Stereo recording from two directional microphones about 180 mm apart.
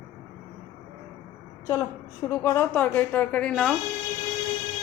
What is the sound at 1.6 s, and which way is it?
A woman's voice, 20° left (ahead or behind).